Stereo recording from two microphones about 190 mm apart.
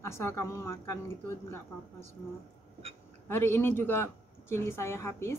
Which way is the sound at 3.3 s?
10° left (ahead or behind).